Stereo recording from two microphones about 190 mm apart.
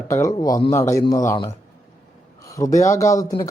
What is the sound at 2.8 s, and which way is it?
Speech, 15° left (ahead or behind).